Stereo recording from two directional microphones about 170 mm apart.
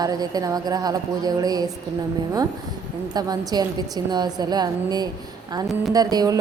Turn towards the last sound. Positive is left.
turn(degrees=-20)  # may be behind; listen again after turning